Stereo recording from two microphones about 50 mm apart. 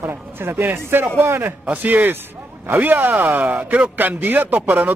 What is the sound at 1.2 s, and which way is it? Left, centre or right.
Speech, right.